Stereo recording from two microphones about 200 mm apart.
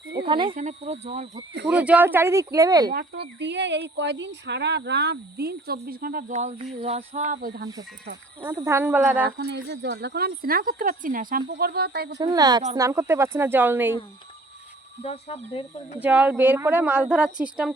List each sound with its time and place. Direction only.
0.2 s speech: 25° right (ahead or behind)
0.5 s speech: 35° right (ahead or behind)
1.6 s a woman's voice: 5° right (ahead or behind)
2.9 s speech: 55° right (ahead or behind)
8.5 s a woman's voice: 15° right (ahead or behind)
9.4 s speech: 55° right (ahead or behind)
12.2 s a woman's voice: 20° right (ahead or behind)
15.0 s speech: 30° left (ahead or behind)
16.0 s a woman's voice: 5° right (ahead or behind)